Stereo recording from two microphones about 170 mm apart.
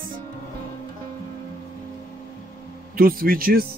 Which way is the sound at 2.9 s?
60° right (ahead or behind).